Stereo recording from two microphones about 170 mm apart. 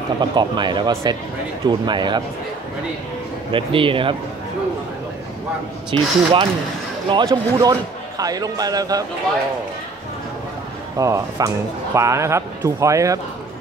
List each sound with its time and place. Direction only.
0.2 s speech: 25° right (ahead or behind)
3.5 s speech: 30° right (ahead or behind)
5.9 s speech: 30° right (ahead or behind)
11.0 s speech: 20° right (ahead or behind)